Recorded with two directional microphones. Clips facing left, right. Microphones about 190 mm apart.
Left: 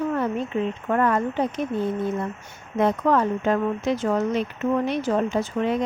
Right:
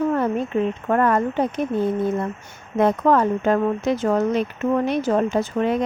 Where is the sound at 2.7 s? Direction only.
50° right (ahead or behind).